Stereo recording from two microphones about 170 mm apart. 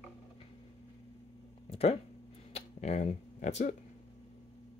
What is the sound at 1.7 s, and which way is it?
Speech, 40° left (ahead or behind).